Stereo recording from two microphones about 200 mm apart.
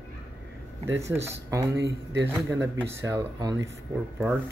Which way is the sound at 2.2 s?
15° right (ahead or behind).